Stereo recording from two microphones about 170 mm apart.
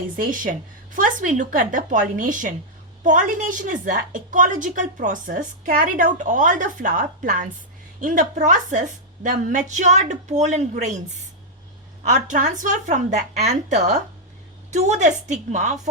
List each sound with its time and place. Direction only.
0.2 s a woman's voice: 55° right (ahead or behind)
12.0 s a woman's voice: 45° right (ahead or behind)